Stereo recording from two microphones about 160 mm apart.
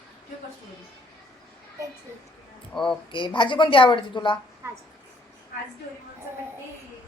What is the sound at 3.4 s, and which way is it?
A woman's voice, 30° left (ahead or behind).